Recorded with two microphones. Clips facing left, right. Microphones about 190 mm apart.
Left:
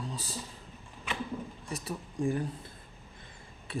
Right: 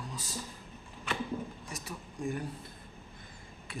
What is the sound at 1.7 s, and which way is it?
Speech, 30° left (ahead or behind).